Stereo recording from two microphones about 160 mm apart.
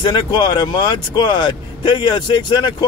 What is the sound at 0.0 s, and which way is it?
Speech, 30° left (ahead or behind).